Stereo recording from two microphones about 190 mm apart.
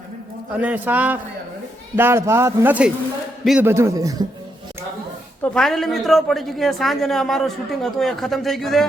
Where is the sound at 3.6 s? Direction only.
15° right (ahead or behind).